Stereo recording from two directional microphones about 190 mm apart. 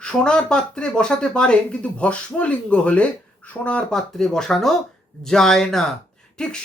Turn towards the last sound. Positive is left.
turn(degrees=5)  # may be behind; listen again after turning